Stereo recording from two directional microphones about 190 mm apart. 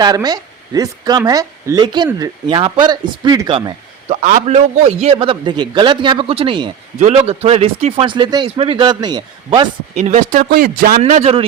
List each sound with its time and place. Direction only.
0.0 s a man's voice: 20° right (ahead or behind)
4.1 s a man's voice: 40° right (ahead or behind); by 9.6 s 20° right (ahead or behind)
9.9 s speech: 35° right (ahead or behind)
11.0 s a man's voice: 35° right (ahead or behind)